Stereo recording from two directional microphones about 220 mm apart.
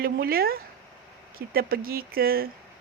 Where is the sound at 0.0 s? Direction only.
45° right (ahead or behind).